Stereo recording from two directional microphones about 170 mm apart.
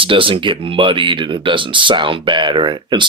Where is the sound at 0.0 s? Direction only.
30° right (ahead or behind).